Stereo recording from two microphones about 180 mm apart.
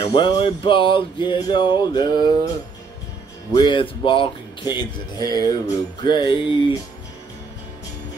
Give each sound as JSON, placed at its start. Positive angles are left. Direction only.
{"t": 0.0, "sound": "speech", "side_deg": 25}
{"t": 3.5, "sound": "speech", "side_deg": 25}